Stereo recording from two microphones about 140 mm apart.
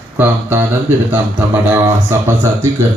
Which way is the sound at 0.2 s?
15° right (ahead or behind).